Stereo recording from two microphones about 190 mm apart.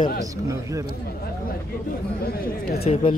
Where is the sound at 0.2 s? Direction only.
15° right (ahead or behind).